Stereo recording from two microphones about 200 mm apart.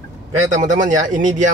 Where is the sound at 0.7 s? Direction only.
40° right (ahead or behind).